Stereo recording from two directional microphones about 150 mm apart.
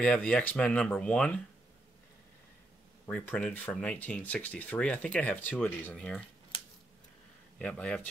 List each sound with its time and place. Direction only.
0.0 s speech: 10° left (ahead or behind)
3.1 s speech: 5° left (ahead or behind)
6.5 s scissors: 35° left (ahead or behind)
7.5 s speech: 5° left (ahead or behind)